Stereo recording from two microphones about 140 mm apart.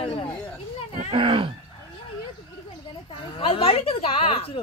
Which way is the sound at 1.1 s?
40° right (ahead or behind).